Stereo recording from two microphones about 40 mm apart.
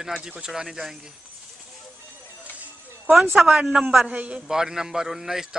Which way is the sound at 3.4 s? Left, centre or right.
Right.